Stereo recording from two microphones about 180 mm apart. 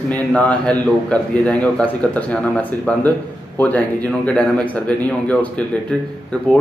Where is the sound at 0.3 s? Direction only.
5° left (ahead or behind).